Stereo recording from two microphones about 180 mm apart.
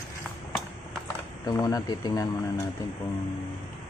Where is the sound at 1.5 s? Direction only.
20° left (ahead or behind).